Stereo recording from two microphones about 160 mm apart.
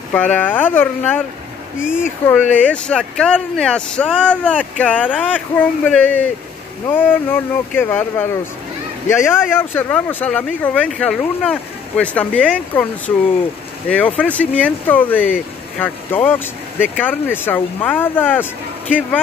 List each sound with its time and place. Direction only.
0.1 s speech: 10° left (ahead or behind)
1.8 s speech: 5° right (ahead or behind)
2.2 s speech: 10° left (ahead or behind)